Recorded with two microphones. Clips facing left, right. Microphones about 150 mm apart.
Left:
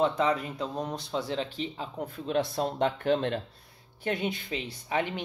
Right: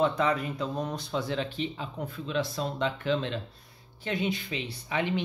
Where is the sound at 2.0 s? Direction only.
50° left (ahead or behind).